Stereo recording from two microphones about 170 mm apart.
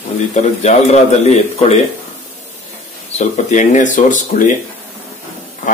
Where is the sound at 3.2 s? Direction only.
45° left (ahead or behind).